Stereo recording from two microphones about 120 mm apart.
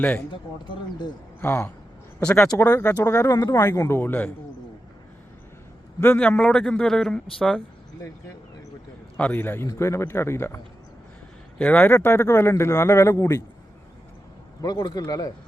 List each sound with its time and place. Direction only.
1.4 s speech: 20° left (ahead or behind)
2.1 s speech: 5° left (ahead or behind)
2.6 s speech: 20° left (ahead or behind)
6.1 s speech: 5° left (ahead or behind)
9.1 s speech: 15° left (ahead or behind)
11.5 s speech: 10° left (ahead or behind); by 13.4 s 25° left (ahead or behind)
14.6 s a man's voice: 30° left (ahead or behind)